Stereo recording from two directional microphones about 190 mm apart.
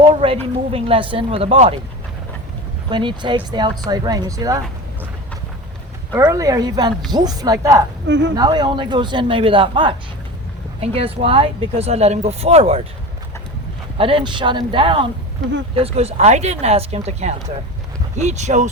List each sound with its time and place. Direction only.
0.0 s a sound: 30° right (ahead or behind)
0.7 s speech: 30° right (ahead or behind)
2.9 s speech: 25° right (ahead or behind)
6.1 s speech: 15° right (ahead or behind)
8.0 s speech: 70° right (ahead or behind)
8.4 s speech: 20° right (ahead or behind)
14.0 s speech: 25° right (ahead or behind)